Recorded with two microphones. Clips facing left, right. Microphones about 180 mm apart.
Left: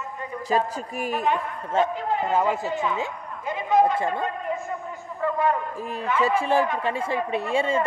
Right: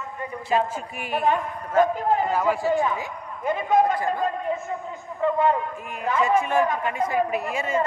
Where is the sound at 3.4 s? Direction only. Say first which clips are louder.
Right 2 dB; 50° right (ahead or behind).